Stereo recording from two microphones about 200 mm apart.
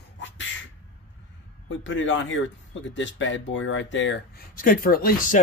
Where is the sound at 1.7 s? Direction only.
70° left (ahead or behind).